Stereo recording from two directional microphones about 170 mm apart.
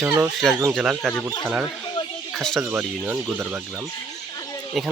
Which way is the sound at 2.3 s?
Centre (ahead or behind).